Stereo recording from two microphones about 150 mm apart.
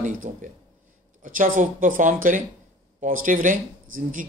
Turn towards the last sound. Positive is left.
turn(degrees=-65)  # may be behind; listen again after turning